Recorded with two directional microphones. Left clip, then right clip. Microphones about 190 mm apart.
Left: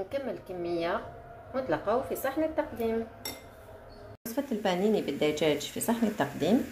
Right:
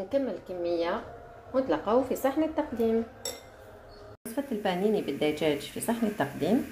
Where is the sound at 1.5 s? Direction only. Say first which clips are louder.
Right 3 dB; 30° right (ahead or behind).